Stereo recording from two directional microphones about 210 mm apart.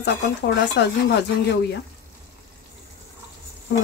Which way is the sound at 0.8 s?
55° left (ahead or behind).